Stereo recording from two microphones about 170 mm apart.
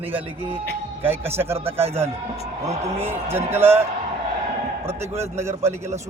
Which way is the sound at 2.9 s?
15° right (ahead or behind).